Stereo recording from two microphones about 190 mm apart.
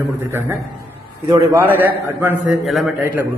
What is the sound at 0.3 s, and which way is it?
Speech, 10° right (ahead or behind).